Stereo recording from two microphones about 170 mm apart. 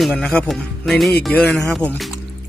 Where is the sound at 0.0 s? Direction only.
5° left (ahead or behind).